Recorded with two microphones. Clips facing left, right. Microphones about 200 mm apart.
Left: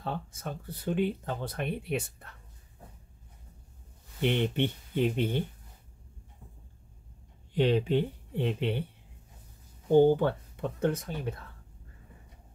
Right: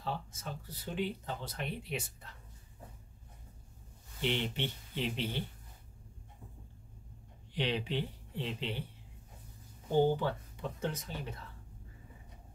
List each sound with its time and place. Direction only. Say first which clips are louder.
0.0 s speech: left 4 dB; 55° left (ahead or behind)
4.2 s speech: left 7 dB; 55° left (ahead or behind)
7.5 s speech: left 9 dB; 50° left (ahead or behind)
10.1 s speech: left 6 dB; 55° left (ahead or behind)